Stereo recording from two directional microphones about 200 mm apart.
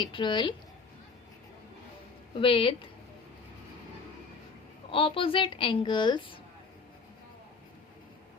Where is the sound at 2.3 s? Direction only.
25° left (ahead or behind).